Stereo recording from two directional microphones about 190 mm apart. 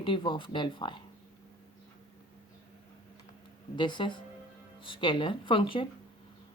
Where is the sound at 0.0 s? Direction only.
25° left (ahead or behind).